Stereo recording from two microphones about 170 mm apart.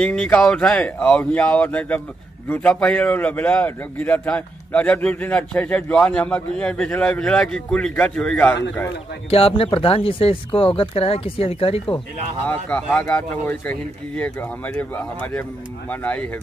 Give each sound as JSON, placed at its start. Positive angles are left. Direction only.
{"t": 0.0, "sound": "a man's voice", "side_deg": 5}
{"t": 9.3, "sound": "speech", "side_deg": 35}
{"t": 12.4, "sound": "a man's voice", "side_deg": 10}
{"t": 15.9, "sound": "a man's voice", "side_deg": 10}